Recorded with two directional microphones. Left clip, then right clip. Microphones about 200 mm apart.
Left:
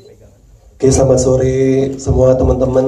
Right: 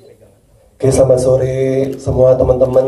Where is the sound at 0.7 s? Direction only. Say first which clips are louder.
Right 1 dB; 45° left (ahead or behind).